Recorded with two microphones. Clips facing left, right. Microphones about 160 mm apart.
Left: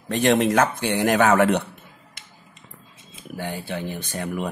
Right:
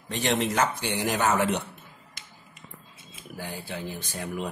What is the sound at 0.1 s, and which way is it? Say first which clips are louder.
Speech: left 8 dB; 50° left (ahead or behind).